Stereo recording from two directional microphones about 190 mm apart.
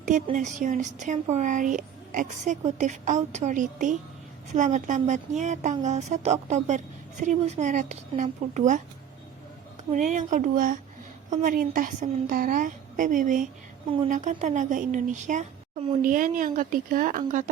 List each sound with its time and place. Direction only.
0.0 s speech: 40° right (ahead or behind)
9.9 s a woman's voice: 40° right (ahead or behind)